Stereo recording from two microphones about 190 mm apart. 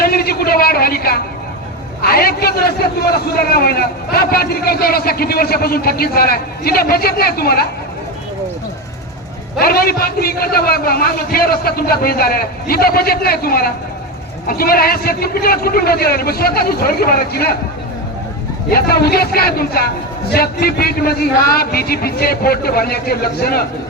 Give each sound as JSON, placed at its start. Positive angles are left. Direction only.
{"t": 0.0, "sound": "a sound", "side_deg": 55}
{"t": 3.5, "sound": "a man's voice", "side_deg": 55}
{"t": 9.6, "sound": "a man's voice", "side_deg": 55}
{"t": 18.7, "sound": "a man's voice", "side_deg": 55}